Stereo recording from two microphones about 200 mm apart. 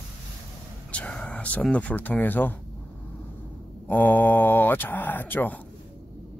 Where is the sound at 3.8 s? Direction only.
10° left (ahead or behind).